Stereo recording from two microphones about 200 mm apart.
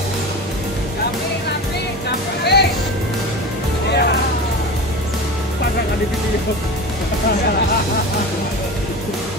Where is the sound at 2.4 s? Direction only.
55° left (ahead or behind).